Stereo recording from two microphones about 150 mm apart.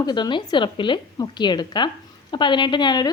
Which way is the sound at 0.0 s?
30° left (ahead or behind).